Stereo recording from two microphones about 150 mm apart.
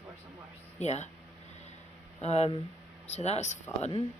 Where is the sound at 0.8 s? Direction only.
50° left (ahead or behind).